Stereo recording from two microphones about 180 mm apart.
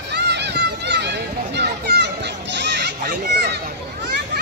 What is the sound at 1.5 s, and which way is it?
Children playing, 70° right (ahead or behind).